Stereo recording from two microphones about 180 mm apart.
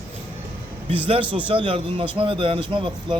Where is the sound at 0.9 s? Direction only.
30° right (ahead or behind).